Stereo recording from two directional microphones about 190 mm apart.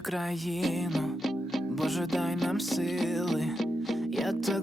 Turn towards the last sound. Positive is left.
turn(degrees=0)  # may be behind; listen again after turning